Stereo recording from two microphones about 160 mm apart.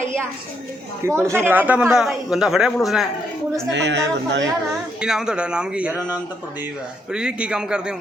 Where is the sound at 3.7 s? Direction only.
90° right.